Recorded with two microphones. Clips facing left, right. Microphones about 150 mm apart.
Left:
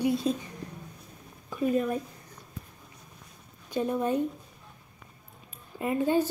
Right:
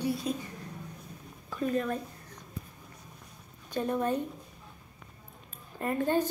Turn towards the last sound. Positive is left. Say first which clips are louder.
# left 2 dB
turn(degrees=10)  # may be behind; listen again after turning